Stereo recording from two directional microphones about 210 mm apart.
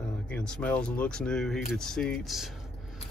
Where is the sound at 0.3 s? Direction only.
5° left (ahead or behind).